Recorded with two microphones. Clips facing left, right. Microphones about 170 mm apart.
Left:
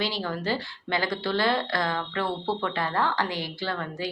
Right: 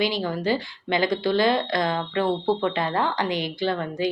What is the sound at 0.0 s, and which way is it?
Speech, 15° right (ahead or behind).